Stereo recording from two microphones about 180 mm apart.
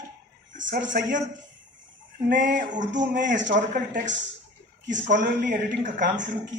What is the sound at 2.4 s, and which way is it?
Speech, 45° right (ahead or behind).